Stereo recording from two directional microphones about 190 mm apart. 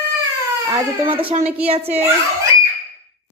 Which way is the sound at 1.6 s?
30° right (ahead or behind).